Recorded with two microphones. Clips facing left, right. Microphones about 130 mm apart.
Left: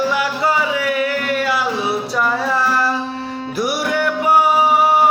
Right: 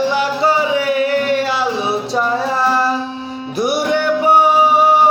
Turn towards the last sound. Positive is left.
turn(degrees=-25)  # may be behind; listen again after turning